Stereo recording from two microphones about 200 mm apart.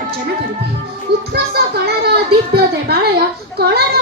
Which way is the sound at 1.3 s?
55° right (ahead or behind).